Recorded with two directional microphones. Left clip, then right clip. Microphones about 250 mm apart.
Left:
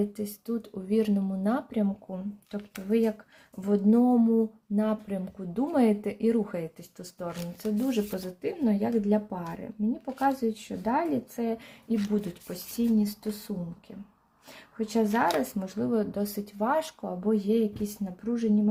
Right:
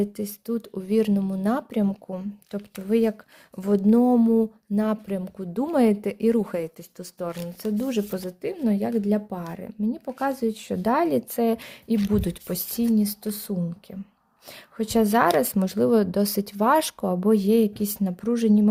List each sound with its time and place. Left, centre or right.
0.0 s speech: right